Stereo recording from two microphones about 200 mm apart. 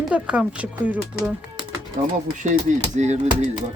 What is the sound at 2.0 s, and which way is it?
Chop, 40° right (ahead or behind).